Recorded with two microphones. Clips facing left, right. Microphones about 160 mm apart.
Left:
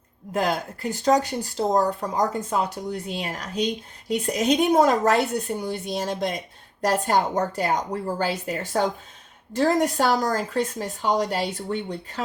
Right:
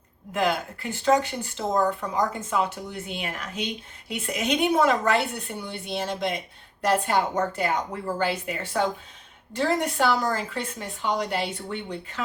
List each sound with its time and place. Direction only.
0.3 s speech: 40° left (ahead or behind)